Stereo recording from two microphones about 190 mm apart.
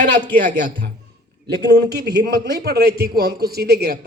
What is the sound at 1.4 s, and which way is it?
Speech, 60° right (ahead or behind).